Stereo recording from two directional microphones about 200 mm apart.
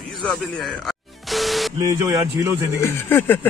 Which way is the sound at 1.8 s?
15° right (ahead or behind).